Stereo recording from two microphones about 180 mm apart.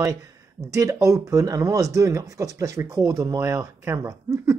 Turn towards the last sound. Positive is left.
turn(degrees=-15)  # may be behind; listen again after turning